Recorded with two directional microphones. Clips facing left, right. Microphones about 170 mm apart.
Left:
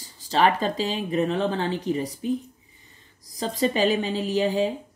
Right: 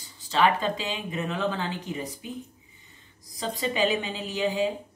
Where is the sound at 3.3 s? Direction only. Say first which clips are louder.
Left 5 dB; 40° left (ahead or behind).